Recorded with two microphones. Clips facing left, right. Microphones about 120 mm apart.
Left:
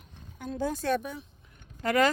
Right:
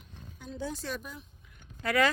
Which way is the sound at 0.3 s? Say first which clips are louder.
Left 6 dB; 50° left (ahead or behind).